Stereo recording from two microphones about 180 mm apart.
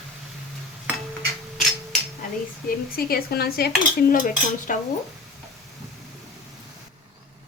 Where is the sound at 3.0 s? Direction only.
55° left (ahead or behind).